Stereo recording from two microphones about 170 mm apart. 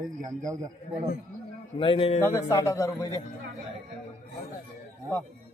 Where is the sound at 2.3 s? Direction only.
15° left (ahead or behind).